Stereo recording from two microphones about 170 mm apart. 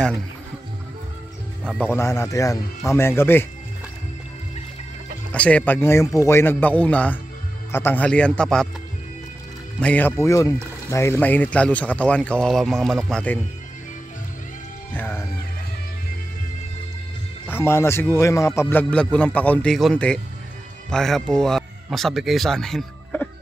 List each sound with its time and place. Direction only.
1.8 s speech: 15° left (ahead or behind)
5.3 s speech: 10° left (ahead or behind)
9.8 s speech: 10° left (ahead or behind)
15.0 s music: 10° left (ahead or behind)
17.5 s speech: 15° left (ahead or behind)